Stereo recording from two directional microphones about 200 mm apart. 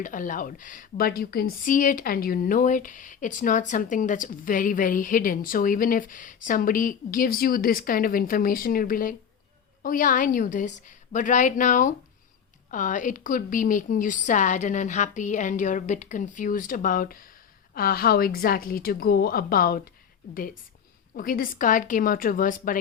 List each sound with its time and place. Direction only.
0.0 s a woman's voice: 40° left (ahead or behind)
21.2 s speech: 45° left (ahead or behind)